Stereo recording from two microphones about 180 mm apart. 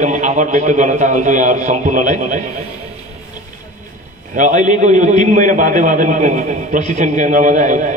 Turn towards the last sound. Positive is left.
turn(degrees=-45)  # may be behind; listen again after turning